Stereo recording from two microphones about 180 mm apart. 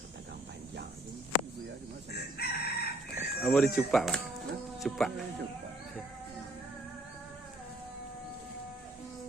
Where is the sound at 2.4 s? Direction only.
65° left (ahead or behind).